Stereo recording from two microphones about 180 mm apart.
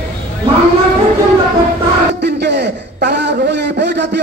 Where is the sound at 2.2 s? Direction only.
70° right (ahead or behind).